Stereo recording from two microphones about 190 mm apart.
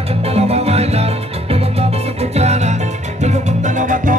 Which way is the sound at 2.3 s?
35° right (ahead or behind).